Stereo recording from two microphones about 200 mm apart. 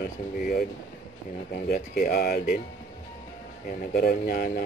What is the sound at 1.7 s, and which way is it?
Speech, 45° left (ahead or behind).